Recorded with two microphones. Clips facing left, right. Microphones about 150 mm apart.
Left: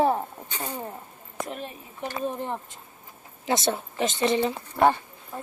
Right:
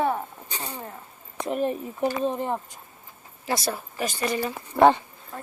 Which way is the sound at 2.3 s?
15° right (ahead or behind).